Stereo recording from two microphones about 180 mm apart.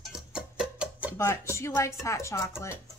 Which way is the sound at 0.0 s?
5° right (ahead or behind).